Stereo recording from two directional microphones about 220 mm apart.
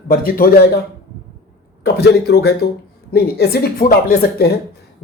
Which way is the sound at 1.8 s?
45° left (ahead or behind).